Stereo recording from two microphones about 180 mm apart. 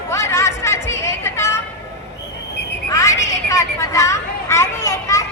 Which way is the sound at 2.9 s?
15° left (ahead or behind).